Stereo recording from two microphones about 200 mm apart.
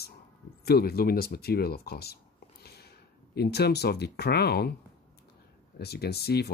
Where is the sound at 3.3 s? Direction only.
55° left (ahead or behind).